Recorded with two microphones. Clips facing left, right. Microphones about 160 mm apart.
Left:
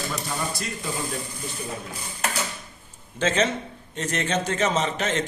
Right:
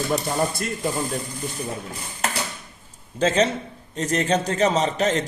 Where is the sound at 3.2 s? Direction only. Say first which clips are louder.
Right 3 dB; 35° right (ahead or behind).